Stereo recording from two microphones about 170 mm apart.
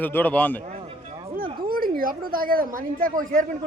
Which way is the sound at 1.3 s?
60° right (ahead or behind).